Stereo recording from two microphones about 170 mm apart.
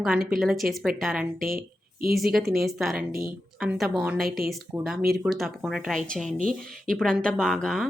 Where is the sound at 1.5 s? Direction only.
55° right (ahead or behind).